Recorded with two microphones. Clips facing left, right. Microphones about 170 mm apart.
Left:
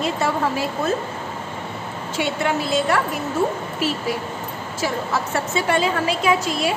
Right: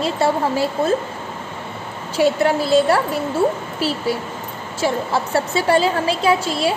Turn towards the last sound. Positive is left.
turn(degrees=-30)  # may be behind; listen again after turning